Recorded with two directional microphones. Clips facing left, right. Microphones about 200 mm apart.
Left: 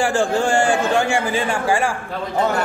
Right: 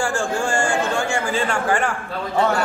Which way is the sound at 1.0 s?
15° left (ahead or behind).